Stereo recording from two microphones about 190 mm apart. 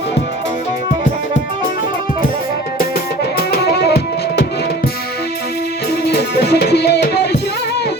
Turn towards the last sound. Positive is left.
turn(degrees=60)  # may be behind; listen again after turning